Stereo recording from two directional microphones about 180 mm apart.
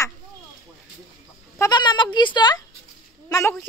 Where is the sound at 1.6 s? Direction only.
25° left (ahead or behind).